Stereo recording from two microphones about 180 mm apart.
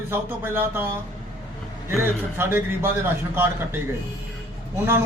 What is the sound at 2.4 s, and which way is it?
A man's voice, 15° right (ahead or behind).